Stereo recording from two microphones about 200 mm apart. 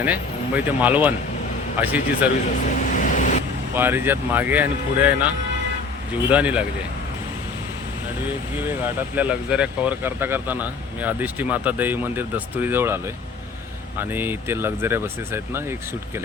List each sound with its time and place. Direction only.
0.0 s speech: 10° right (ahead or behind)
2.9 s vehicle: 40° left (ahead or behind)
3.8 s speech: 10° right (ahead or behind)
9.1 s speech: 5° right (ahead or behind)
14.0 s speech: 10° right (ahead or behind)